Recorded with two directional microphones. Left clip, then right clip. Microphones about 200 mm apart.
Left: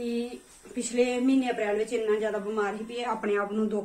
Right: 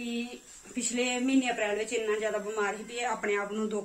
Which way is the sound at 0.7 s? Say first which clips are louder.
Left 4 dB; centre (ahead or behind).